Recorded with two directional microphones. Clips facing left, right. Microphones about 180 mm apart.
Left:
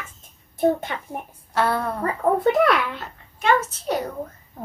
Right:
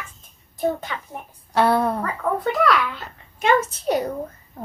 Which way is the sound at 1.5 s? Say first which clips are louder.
Right 4 dB; 15° right (ahead or behind).